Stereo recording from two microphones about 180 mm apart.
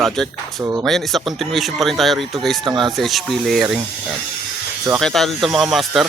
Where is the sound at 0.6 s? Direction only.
15° right (ahead or behind).